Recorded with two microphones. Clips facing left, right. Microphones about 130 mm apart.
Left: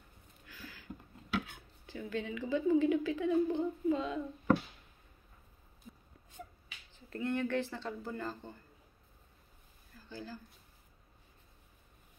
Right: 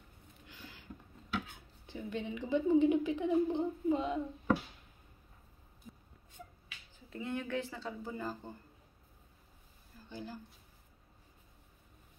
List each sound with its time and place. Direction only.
0.5 s a sound: 25° right (ahead or behind)
1.9 s a woman's voice: 20° right (ahead or behind)
7.1 s speech: 5° right (ahead or behind)
10.0 s speech: 20° right (ahead or behind)